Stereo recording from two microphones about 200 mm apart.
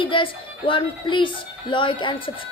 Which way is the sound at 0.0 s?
25° left (ahead or behind).